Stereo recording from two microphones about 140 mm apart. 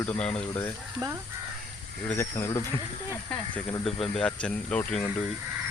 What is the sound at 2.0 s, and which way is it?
Speech, 15° left (ahead or behind).